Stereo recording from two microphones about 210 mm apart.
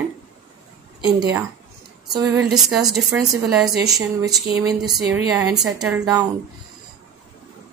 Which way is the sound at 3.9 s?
15° right (ahead or behind).